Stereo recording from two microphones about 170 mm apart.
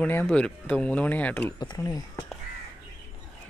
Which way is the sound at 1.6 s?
20° left (ahead or behind).